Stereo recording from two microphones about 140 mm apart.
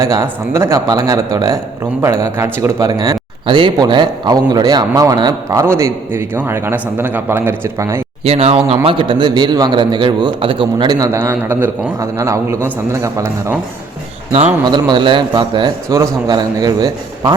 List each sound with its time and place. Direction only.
0.0 s speech: 20° right (ahead or behind)
8.2 s a man's voice: 45° right (ahead or behind); by 13.6 s 20° right (ahead or behind)
14.6 s a man's voice: 30° right (ahead or behind)